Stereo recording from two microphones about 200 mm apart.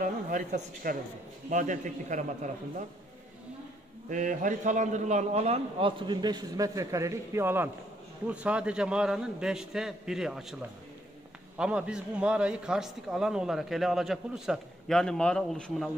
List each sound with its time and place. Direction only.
0.0 s a man's voice: 40° right (ahead or behind)
4.1 s a man's voice: 40° right (ahead or behind); by 10.4 s 5° right (ahead or behind)
11.5 s a man's voice: 5° right (ahead or behind)